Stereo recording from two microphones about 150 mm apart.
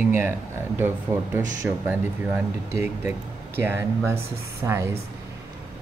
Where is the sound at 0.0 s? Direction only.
15° right (ahead or behind).